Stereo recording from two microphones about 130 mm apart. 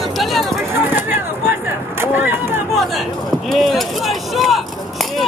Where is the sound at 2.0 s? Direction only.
15° right (ahead or behind).